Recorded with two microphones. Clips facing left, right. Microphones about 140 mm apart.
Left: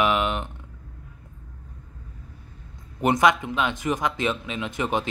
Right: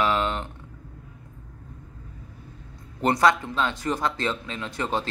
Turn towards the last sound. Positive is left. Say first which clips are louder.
# left 2 dB
turn(degrees=15)  # may be behind; listen again after turning